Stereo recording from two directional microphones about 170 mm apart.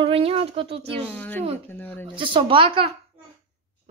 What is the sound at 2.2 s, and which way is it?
Speech, 30° right (ahead or behind).